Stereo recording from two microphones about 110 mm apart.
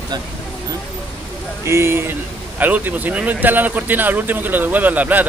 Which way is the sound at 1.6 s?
25° right (ahead or behind).